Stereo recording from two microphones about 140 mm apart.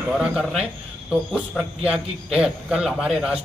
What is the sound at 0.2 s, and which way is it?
Speech, centre (ahead or behind).